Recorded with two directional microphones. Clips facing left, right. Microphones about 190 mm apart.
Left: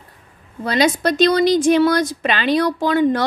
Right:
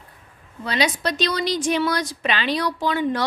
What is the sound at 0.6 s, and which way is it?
A woman's voice, 45° left (ahead or behind).